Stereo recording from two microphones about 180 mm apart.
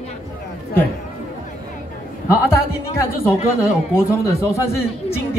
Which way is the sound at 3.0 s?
15° left (ahead or behind).